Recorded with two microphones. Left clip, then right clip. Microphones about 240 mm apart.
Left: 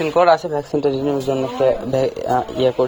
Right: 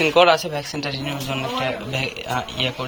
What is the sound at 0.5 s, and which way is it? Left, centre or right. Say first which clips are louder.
Speech: left 7 dB; left.